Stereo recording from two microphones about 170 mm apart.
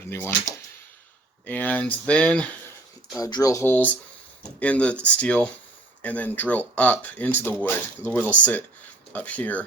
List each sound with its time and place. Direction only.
0.1 s speech: 15° left (ahead or behind)
3.2 s speech: 20° left (ahead or behind)